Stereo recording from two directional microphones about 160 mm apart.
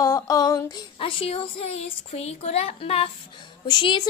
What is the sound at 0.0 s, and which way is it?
Speech, 20° left (ahead or behind).